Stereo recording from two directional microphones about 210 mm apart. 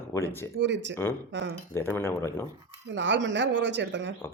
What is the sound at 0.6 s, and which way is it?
Speech, 60° right (ahead or behind).